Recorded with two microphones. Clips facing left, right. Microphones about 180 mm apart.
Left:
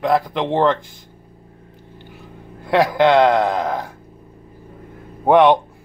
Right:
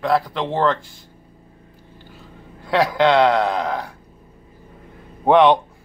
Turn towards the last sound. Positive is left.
turn(degrees=10)  # may be behind; listen again after turning